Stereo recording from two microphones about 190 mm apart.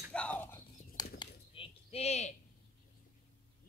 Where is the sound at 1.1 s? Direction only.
30° left (ahead or behind).